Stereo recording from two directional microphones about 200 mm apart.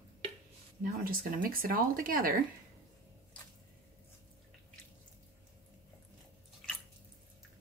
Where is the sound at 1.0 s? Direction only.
45° right (ahead or behind).